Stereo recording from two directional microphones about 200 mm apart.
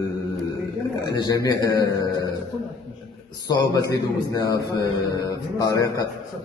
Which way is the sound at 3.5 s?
20° left (ahead or behind).